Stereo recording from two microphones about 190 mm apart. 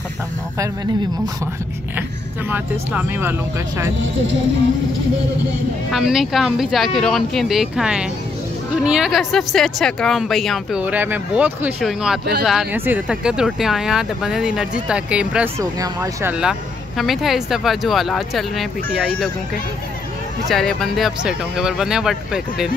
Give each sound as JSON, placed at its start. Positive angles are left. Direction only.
{"t": 2.5, "sound": "speech", "side_deg": -10}
{"t": 5.9, "sound": "speech", "side_deg": 0}
{"t": 20.4, "sound": "speech", "side_deg": 0}